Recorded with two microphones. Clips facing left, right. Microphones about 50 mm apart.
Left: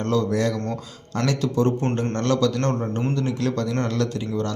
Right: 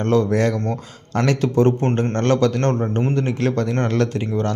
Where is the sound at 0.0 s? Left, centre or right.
Right.